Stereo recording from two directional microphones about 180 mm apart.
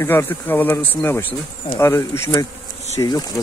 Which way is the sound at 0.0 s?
10° left (ahead or behind).